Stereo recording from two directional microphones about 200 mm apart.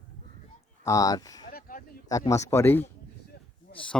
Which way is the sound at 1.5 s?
45° left (ahead or behind).